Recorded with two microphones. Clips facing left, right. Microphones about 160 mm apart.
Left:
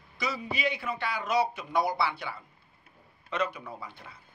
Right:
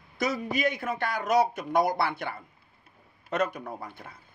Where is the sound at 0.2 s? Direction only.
45° right (ahead or behind).